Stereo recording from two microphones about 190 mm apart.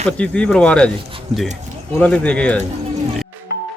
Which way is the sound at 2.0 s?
5° left (ahead or behind).